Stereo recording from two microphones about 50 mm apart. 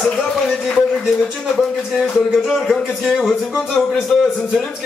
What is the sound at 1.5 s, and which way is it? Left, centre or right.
A man's voice, centre.